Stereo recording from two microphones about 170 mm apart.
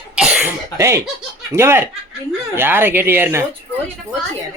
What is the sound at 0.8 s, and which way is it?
Speech, 15° right (ahead or behind).